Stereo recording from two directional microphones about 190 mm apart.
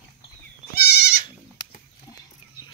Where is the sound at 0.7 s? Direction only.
55° left (ahead or behind).